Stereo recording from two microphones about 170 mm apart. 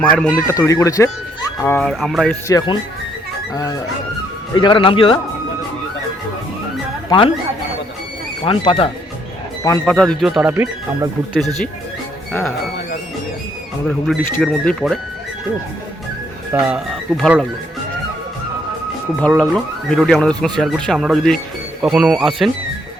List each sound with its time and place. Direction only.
0.0 s speech: 5° left (ahead or behind)
1.8 s speech: centre (ahead or behind)
2.5 s speech: 20° left (ahead or behind)
7.1 s speech: 25° left (ahead or behind)
8.4 s speech: 35° left (ahead or behind)
9.8 s speech: 5° left (ahead or behind)
10.5 s speech: 15° right (ahead or behind)
12.3 s speech: centre (ahead or behind)
13.8 s speech: centre (ahead or behind)
16.5 s speech: 5° right (ahead or behind)
19.4 s speech: 5° left (ahead or behind)